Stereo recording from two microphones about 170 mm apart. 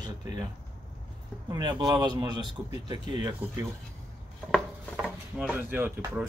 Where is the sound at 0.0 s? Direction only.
25° right (ahead or behind).